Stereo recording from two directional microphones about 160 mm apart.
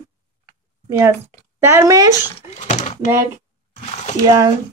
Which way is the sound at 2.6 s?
50° left (ahead or behind).